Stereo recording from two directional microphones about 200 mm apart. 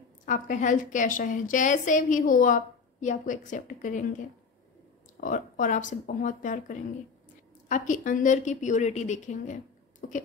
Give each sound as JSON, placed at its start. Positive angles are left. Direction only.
{"t": 0.2, "sound": "a woman's voice", "side_deg": 40}
{"t": 5.2, "sound": "a woman's voice", "side_deg": 40}